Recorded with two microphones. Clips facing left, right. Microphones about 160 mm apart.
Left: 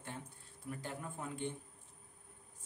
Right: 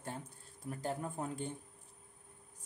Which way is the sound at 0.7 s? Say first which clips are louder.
Right 5 dB; 40° right (ahead or behind).